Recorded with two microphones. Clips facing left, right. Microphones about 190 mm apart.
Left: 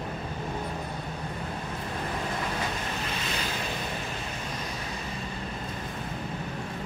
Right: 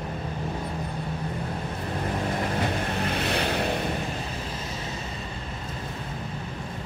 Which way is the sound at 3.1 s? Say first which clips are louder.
Right 7 dB; 60° right (ahead or behind).